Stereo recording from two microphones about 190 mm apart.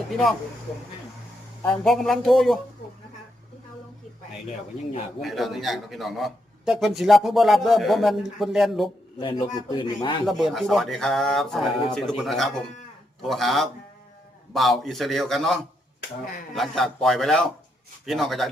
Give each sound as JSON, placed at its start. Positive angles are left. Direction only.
{"t": 1.6, "sound": "a man's voice", "side_deg": 5}
{"t": 5.2, "sound": "a man's voice", "side_deg": 0}
{"t": 9.1, "sound": "a man's voice", "side_deg": 25}
{"t": 10.2, "sound": "a man's voice", "side_deg": 0}
{"t": 16.6, "sound": "a man's voice", "side_deg": 0}